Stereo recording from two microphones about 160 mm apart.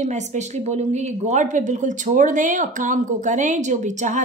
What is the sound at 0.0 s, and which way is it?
A woman's voice, 45° right (ahead or behind).